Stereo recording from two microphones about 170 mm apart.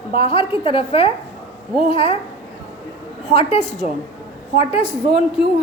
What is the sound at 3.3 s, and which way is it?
A woman's voice, 40° left (ahead or behind).